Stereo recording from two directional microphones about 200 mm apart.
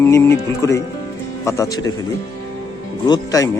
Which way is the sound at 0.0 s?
10° left (ahead or behind).